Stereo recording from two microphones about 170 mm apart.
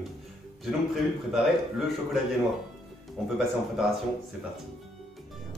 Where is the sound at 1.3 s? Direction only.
Centre (ahead or behind).